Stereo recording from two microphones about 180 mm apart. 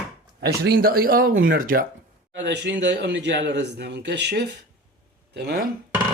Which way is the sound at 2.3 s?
75° right (ahead or behind).